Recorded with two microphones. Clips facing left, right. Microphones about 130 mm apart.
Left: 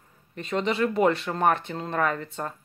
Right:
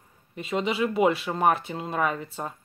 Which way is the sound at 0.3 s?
5° right (ahead or behind).